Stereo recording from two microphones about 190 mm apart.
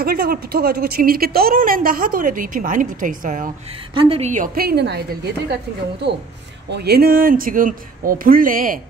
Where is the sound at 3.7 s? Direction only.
30° right (ahead or behind).